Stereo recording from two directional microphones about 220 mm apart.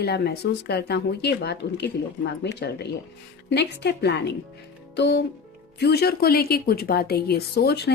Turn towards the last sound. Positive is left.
turn(degrees=50)  # may be behind; listen again after turning